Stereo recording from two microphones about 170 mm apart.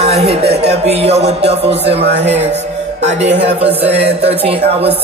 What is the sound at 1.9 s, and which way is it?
Speech, 80° right.